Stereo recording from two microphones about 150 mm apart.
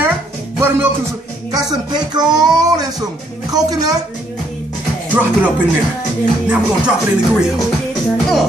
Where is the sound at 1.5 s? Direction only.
25° right (ahead or behind).